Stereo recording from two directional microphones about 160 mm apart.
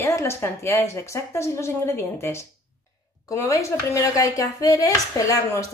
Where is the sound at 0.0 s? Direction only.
15° left (ahead or behind).